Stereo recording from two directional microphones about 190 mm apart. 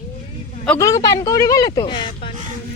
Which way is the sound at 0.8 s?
15° left (ahead or behind).